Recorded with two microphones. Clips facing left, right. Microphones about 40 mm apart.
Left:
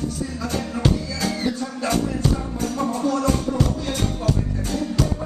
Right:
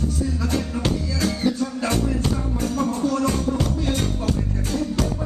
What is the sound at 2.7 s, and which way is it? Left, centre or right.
Music, centre.